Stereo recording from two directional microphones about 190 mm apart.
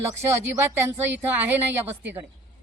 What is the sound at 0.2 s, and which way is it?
Speech, 15° right (ahead or behind).